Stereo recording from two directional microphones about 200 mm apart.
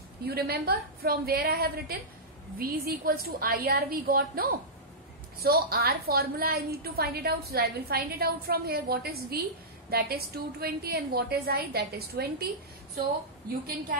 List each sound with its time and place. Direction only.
0.3 s a woman's voice: 50° right (ahead or behind)